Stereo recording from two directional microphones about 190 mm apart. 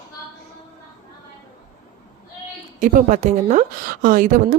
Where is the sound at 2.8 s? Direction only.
40° right (ahead or behind).